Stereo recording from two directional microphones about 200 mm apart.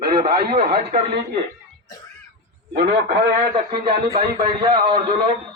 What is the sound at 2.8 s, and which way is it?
Speech, 50° right (ahead or behind).